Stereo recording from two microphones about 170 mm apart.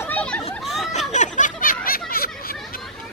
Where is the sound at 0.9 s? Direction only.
45° left (ahead or behind); by 2.8 s 60° left (ahead or behind).